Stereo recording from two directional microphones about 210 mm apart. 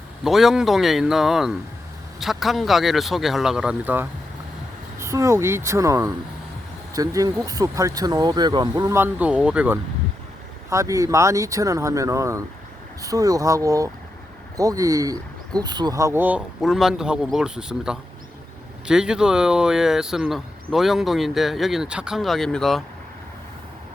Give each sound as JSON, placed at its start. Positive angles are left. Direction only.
{"t": 0.3, "sound": "speech", "side_deg": 0}